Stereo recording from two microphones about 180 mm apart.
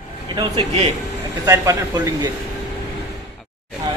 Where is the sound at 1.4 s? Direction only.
20° right (ahead or behind).